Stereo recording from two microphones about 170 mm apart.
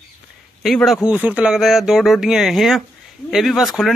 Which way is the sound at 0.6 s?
Centre (ahead or behind).